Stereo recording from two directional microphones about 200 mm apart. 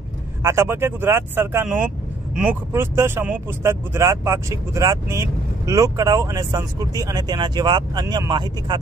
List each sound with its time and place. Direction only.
0.4 s speech: 15° right (ahead or behind)